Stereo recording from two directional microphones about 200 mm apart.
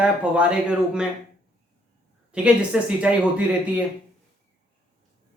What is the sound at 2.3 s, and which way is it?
Speech, 5° right (ahead or behind).